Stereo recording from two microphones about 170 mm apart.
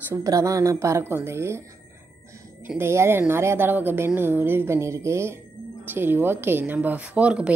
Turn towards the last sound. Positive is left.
turn(degrees=-5)  # may be behind; listen again after turning